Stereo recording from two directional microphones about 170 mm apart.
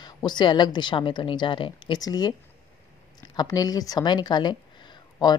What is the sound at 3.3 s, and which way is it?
A woman's voice, 20° left (ahead or behind).